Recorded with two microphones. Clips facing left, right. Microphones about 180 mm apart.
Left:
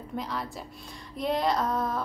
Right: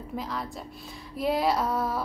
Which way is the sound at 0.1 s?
Centre (ahead or behind).